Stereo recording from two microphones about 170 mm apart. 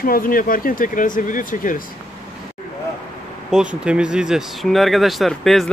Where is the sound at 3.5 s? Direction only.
5° right (ahead or behind).